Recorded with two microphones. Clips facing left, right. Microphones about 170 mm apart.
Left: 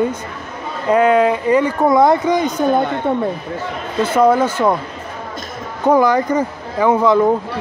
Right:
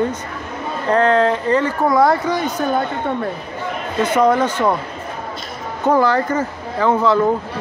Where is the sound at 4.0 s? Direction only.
5° left (ahead or behind).